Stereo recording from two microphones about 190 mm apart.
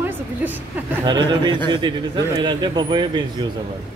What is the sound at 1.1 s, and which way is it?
Speech, 25° right (ahead or behind).